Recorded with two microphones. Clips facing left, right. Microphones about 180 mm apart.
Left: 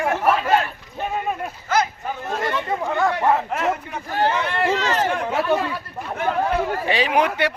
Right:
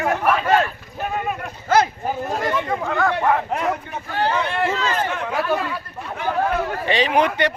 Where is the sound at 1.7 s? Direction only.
35° right (ahead or behind).